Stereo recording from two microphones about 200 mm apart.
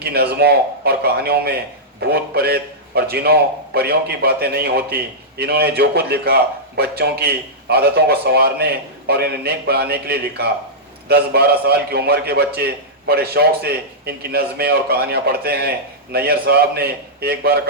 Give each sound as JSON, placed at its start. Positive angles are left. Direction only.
{"t": 0.0, "sound": "a man's voice", "side_deg": -50}